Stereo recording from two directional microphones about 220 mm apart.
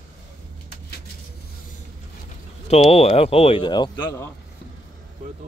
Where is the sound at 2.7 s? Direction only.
25° left (ahead or behind).